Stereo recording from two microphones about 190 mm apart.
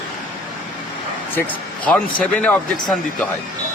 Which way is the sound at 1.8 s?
5° left (ahead or behind).